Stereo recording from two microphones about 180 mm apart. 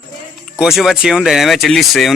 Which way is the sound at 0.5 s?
5° right (ahead or behind).